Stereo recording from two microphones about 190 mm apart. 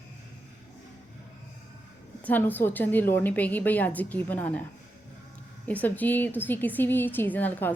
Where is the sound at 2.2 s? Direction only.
10° left (ahead or behind).